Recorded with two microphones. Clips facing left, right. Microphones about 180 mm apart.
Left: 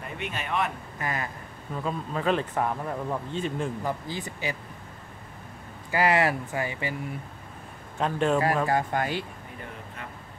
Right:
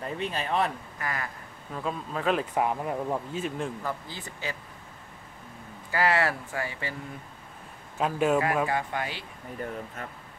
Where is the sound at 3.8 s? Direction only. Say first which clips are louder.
Left 4 dB; 15° left (ahead or behind).